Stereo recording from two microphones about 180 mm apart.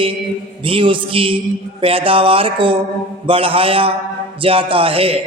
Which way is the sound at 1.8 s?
30° right (ahead or behind).